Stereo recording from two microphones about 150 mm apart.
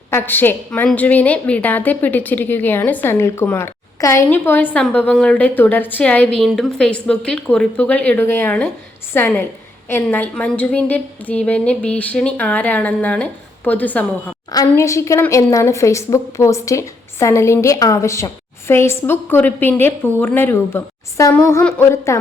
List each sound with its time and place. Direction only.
0.1 s a woman's voice: 15° left (ahead or behind)
14.5 s a woman's voice: 20° left (ahead or behind)